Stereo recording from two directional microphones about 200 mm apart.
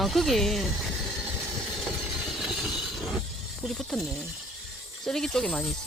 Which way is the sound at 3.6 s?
Centre (ahead or behind).